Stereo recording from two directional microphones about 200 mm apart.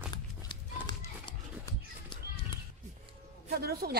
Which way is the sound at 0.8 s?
20° left (ahead or behind).